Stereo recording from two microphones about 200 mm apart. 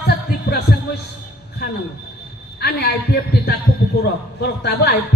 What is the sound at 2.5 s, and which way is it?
A man's voice, 55° left (ahead or behind).